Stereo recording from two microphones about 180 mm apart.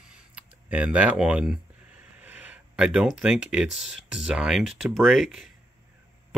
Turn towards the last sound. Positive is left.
turn(degrees=-5)  # may be behind; listen again after turning